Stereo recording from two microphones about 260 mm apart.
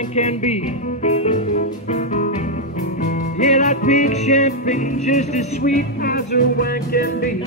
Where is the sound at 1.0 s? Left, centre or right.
Left.